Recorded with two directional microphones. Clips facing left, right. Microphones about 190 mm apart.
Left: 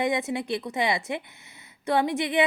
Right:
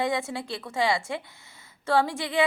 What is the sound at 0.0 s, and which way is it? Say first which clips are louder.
A woman's voice: left 2 dB; 20° left (ahead or behind).